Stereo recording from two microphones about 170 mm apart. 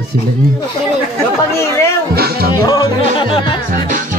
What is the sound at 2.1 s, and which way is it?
Music, 65° right (ahead or behind).